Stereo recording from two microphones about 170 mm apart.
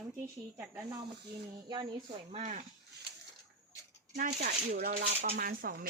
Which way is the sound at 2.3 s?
45° right (ahead or behind).